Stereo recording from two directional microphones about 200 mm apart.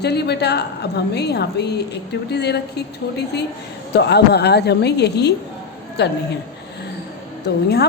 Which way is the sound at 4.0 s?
55° left (ahead or behind).